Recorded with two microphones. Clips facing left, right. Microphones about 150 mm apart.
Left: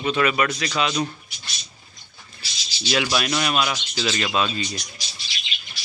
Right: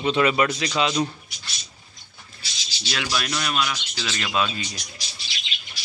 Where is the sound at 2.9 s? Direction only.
10° left (ahead or behind).